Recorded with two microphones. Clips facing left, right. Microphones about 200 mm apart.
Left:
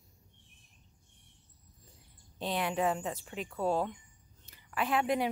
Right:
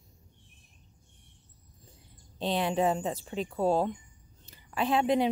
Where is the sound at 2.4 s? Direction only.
30° right (ahead or behind).